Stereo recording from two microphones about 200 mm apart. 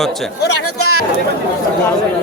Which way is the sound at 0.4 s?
90° left.